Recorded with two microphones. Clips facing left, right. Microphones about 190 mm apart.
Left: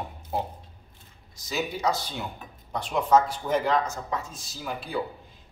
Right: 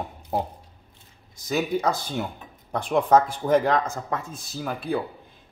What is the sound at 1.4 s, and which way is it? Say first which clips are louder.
Speech: right 4 dB; 55° right (ahead or behind).